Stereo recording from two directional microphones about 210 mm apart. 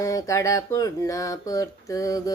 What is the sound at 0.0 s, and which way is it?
Speech, 15° left (ahead or behind).